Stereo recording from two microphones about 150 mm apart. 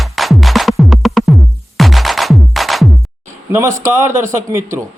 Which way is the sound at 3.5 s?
15° right (ahead or behind).